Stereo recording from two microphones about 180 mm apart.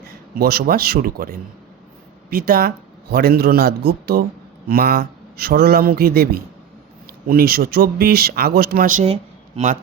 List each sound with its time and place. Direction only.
0.0 s speech: 60° right (ahead or behind)
9.6 s a man's voice: 35° right (ahead or behind)